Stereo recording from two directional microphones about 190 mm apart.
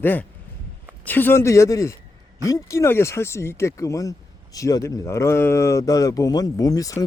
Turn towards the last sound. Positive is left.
turn(degrees=20)  # may be behind; listen again after turning